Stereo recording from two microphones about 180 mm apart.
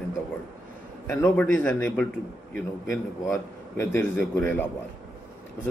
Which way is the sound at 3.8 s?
10° left (ahead or behind).